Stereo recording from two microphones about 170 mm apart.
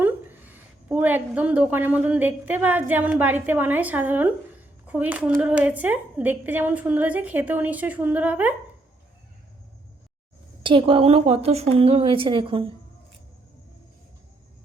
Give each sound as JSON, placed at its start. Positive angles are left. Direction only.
{"t": 0.0, "sound": "a woman's voice", "side_deg": -10}
{"t": 10.6, "sound": "speech", "side_deg": -30}